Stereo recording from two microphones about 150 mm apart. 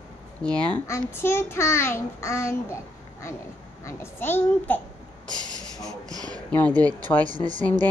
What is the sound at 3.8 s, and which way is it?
Speech, 15° left (ahead or behind).